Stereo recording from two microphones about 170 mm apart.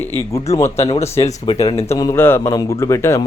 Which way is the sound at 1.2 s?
30° left (ahead or behind).